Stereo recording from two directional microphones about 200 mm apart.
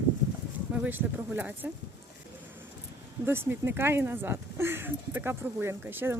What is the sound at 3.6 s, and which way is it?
Speech, 10° right (ahead or behind).